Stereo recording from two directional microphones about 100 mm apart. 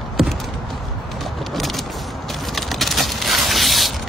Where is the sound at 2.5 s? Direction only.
Centre (ahead or behind).